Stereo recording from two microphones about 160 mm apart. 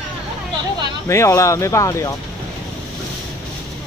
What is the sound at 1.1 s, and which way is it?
Speech, 20° left (ahead or behind).